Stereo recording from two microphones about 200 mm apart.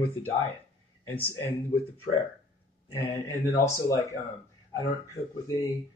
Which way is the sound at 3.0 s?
15° left (ahead or behind).